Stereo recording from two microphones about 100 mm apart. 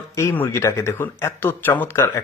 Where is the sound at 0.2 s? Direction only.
25° left (ahead or behind).